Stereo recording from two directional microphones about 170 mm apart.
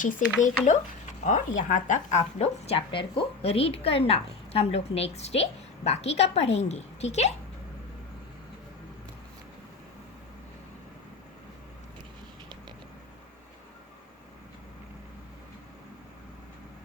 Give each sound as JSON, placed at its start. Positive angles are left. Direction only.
{"t": 0.0, "sound": "a woman's voice", "side_deg": 50}